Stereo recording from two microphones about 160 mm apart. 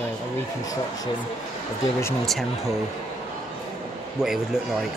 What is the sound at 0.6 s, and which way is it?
Speech, 25° left (ahead or behind).